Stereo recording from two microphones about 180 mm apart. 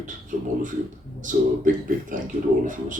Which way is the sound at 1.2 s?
45° right (ahead or behind).